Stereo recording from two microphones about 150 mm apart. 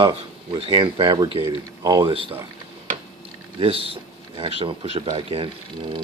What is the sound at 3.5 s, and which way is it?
Speech, 40° right (ahead or behind).